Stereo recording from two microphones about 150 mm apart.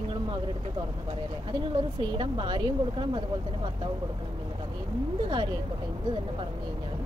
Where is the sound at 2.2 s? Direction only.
35° right (ahead or behind).